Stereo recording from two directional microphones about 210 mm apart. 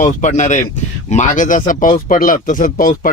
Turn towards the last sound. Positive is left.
turn(degrees=40)  # may be behind; listen again after turning